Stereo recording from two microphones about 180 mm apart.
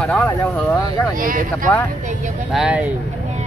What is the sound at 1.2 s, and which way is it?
Speech, 50° right (ahead or behind).